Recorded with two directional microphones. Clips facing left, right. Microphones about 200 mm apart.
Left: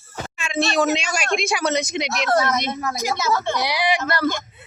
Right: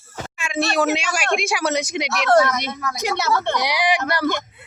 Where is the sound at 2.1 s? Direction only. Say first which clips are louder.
Right 5 dB; 70° right (ahead or behind).